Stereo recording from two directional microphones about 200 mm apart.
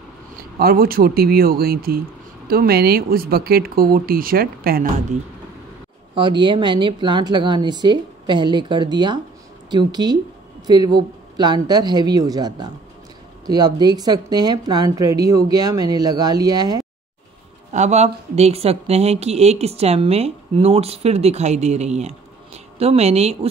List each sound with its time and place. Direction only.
0.6 s speech: 50° right (ahead or behind)
6.1 s speech: 25° right (ahead or behind)
17.7 s speech: 35° right (ahead or behind)